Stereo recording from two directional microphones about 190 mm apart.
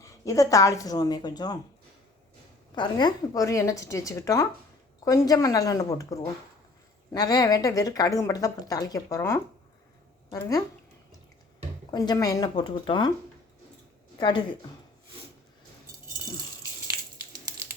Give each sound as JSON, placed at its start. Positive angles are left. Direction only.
{"t": 0.0, "sound": "speech", "side_deg": 15}
{"t": 2.7, "sound": "a woman's voice", "side_deg": 20}
{"t": 11.9, "sound": "speech", "side_deg": 20}
{"t": 14.2, "sound": "speech", "side_deg": 25}